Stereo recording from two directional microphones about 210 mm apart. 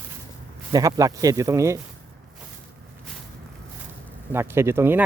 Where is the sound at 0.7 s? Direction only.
15° right (ahead or behind).